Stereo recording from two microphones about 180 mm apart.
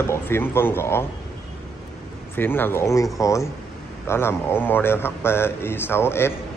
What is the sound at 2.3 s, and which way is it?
A man's voice, 10° left (ahead or behind).